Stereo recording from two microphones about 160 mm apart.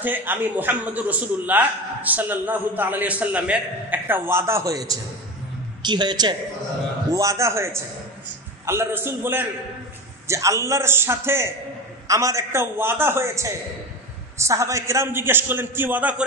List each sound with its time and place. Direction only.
0.0 s a man's voice: 10° right (ahead or behind)